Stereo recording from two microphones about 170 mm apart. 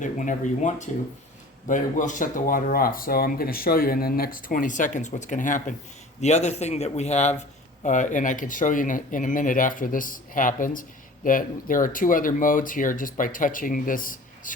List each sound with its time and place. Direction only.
0.0 s a man's voice: 45° left (ahead or behind)